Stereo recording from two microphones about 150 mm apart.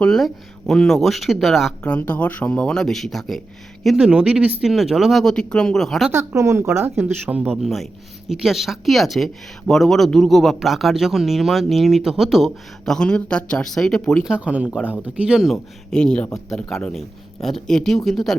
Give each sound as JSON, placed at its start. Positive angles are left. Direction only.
{"t": 0.0, "sound": "speech", "side_deg": 5}
{"t": 6.1, "sound": "a woman's voice", "side_deg": -15}
{"t": 14.3, "sound": "a woman's voice", "side_deg": -10}